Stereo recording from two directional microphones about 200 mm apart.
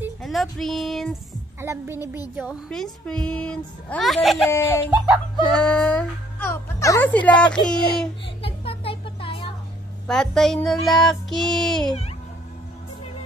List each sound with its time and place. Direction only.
0.0 s speech: centre (ahead or behind)
1.6 s a woman's voice: 10° right (ahead or behind)
2.3 s a woman's voice: centre (ahead or behind)
5.1 s a sound: 5° left (ahead or behind)
7.2 s a woman's voice: 5° left (ahead or behind)
8.4 s music: 30° left (ahead or behind)
10.0 s a woman's voice: centre (ahead or behind)